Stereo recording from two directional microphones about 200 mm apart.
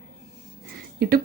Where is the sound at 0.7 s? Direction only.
50° right (ahead or behind).